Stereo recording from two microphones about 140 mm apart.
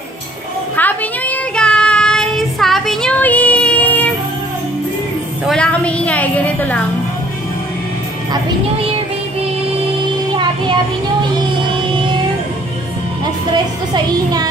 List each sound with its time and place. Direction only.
0.7 s child singing: 10° left (ahead or behind)
5.4 s music: 5° left (ahead or behind)
10.3 s child singing: 35° right (ahead or behind)
11.3 s music: 35° right (ahead or behind)
13.2 s music: 30° right (ahead or behind)